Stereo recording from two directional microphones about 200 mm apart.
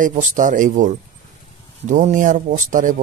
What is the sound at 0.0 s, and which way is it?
Speech, 40° right (ahead or behind).